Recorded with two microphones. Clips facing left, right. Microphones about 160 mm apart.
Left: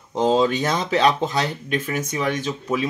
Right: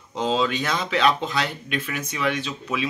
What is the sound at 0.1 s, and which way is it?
Speech, 45° left (ahead or behind).